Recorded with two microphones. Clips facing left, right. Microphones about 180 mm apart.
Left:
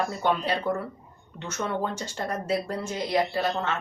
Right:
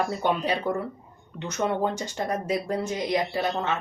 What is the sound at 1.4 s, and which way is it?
Speech, 15° right (ahead or behind).